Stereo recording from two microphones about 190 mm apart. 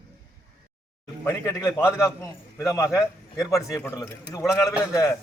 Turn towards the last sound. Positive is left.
turn(degrees=20)  # may be behind; listen again after turning